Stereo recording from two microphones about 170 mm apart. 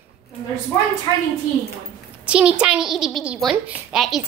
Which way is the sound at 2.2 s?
5° right (ahead or behind).